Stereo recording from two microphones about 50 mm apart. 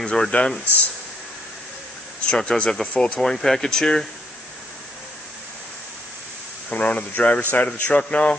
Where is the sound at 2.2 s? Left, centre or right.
Centre.